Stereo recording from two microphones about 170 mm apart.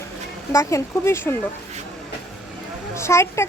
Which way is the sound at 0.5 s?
15° left (ahead or behind).